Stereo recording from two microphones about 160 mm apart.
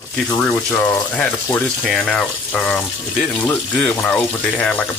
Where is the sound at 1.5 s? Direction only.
5° left (ahead or behind).